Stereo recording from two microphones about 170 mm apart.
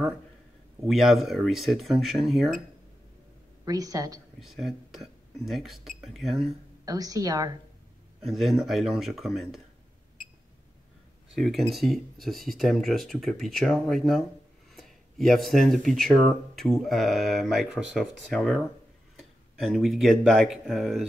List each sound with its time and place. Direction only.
0.8 s speech: centre (ahead or behind)
3.6 s a woman's voice: 20° right (ahead or behind)
4.4 s speech: centre (ahead or behind)
6.8 s a woman's voice: 20° right (ahead or behind)
8.3 s speech: centre (ahead or behind)
11.3 s speech: centre (ahead or behind)